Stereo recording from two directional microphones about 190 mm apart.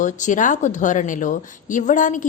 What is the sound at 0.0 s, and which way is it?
A woman's voice, 40° left (ahead or behind).